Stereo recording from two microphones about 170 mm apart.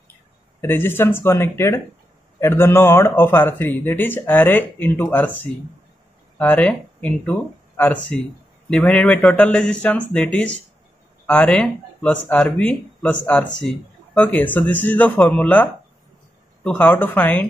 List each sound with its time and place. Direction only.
0.6 s speech: 10° left (ahead or behind)